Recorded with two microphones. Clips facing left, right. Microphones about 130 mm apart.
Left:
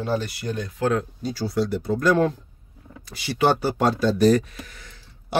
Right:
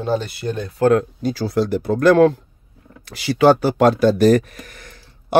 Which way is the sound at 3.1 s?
90° right.